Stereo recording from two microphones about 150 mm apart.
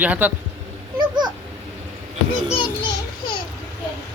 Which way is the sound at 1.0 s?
30° right (ahead or behind).